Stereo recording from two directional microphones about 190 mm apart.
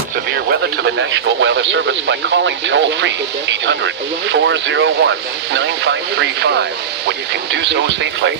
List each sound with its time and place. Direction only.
0.5 s speech: 65° right (ahead or behind)
4.3 s speech: 75° right (ahead or behind)